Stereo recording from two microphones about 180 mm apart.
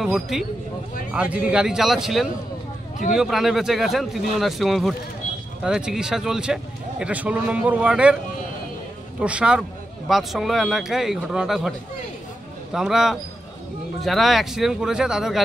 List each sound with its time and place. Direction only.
0.0 s a man's voice: centre (ahead or behind)
9.2 s a man's voice: 5° right (ahead or behind)
12.7 s a man's voice: centre (ahead or behind)